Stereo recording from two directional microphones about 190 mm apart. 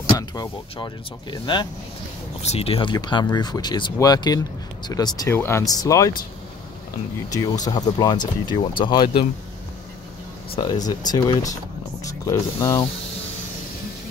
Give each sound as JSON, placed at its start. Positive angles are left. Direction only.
{"t": 0.2, "sound": "speech", "side_deg": 20}
{"t": 2.4, "sound": "speech", "side_deg": 35}
{"t": 7.2, "sound": "speech", "side_deg": 20}
{"t": 10.5, "sound": "speech", "side_deg": 25}